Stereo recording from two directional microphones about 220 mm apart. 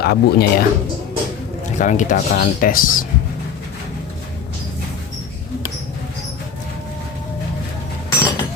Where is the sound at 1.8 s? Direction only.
35° left (ahead or behind).